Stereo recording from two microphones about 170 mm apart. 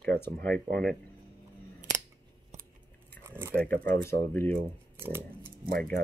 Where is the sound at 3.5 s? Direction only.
5° left (ahead or behind).